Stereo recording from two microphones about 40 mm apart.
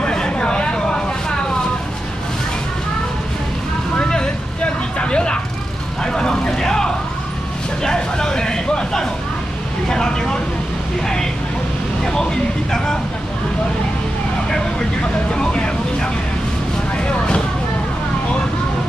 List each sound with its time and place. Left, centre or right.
0.0 s a sound: centre
4.0 s vehicle: centre
7.8 s a sound: centre
9.8 s vehicle: centre
12.0 s vehicle: centre
15.3 s vehicle: left